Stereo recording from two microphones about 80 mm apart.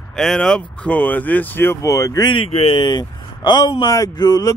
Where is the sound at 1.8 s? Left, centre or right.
Left.